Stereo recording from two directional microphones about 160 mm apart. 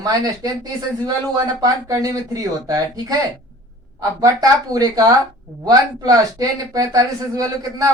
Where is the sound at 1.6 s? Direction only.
20° right (ahead or behind).